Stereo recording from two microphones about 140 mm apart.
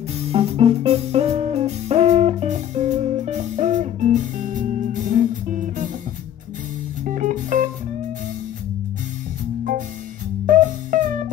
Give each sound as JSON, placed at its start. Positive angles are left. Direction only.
{"t": 0.3, "sound": "music", "side_deg": -45}
{"t": 7.1, "sound": "music", "side_deg": -70}
{"t": 10.4, "sound": "music", "side_deg": -65}